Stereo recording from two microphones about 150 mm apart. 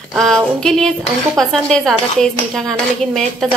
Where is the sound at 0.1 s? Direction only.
Centre (ahead or behind).